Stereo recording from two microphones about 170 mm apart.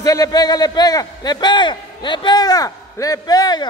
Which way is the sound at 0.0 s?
20° left (ahead or behind).